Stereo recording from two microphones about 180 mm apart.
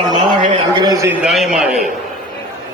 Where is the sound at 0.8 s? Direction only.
20° right (ahead or behind).